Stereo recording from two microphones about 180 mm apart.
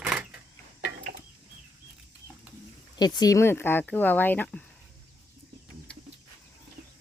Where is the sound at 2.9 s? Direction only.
25° left (ahead or behind).